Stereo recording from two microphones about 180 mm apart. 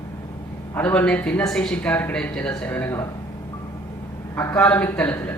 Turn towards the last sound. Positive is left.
turn(degrees=10)  # may be behind; listen again after turning